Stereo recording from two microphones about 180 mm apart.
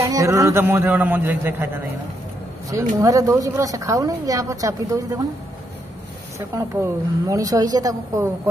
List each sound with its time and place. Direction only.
0.0 s a man's voice: 20° right (ahead or behind)
3.0 s a woman's voice: 20° right (ahead or behind)
6.3 s a woman's voice: 15° right (ahead or behind)